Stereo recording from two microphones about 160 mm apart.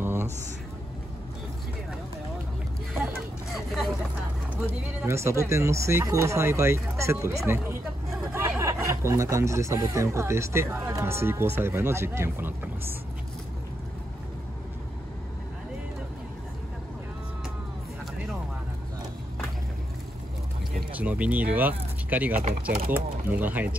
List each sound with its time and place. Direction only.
0.0 s a sound: 15° right (ahead or behind)
3.4 s vehicle: centre (ahead or behind)
5.0 s speech: 15° right (ahead or behind)
8.3 s hubbub: 15° right (ahead or behind)
8.8 s speech: 20° right (ahead or behind)
20.9 s speech: 10° right (ahead or behind)